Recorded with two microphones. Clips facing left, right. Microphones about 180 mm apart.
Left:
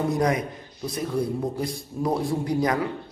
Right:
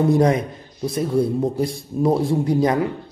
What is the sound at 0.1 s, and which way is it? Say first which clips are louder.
A man's voice: right 6 dB; 30° right (ahead or behind).